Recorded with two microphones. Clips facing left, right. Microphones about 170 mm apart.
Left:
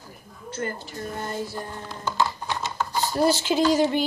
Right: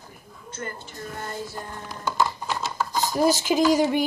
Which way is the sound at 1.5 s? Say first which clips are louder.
Left 2 dB; 10° right (ahead or behind).